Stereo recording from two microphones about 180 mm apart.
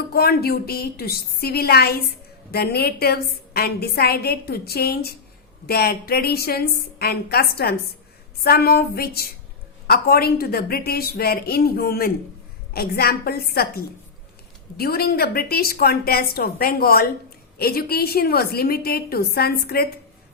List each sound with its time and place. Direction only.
0.1 s a woman's voice: 60° left (ahead or behind)